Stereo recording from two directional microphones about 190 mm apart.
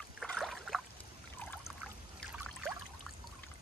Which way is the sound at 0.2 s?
Centre (ahead or behind).